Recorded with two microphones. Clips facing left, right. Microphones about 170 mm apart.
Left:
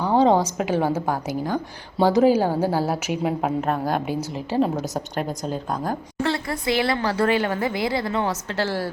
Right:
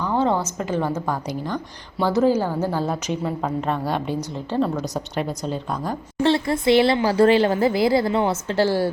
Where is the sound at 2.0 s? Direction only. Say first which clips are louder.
Left 2 dB; 15° left (ahead or behind).